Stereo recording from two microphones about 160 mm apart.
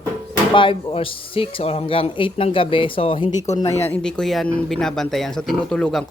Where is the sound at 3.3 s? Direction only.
50° left (ahead or behind).